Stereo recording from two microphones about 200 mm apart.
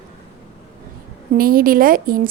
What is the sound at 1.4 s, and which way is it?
Speech, 45° right (ahead or behind).